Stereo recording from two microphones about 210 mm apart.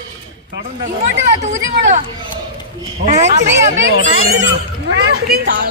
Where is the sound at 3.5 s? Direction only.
65° right (ahead or behind).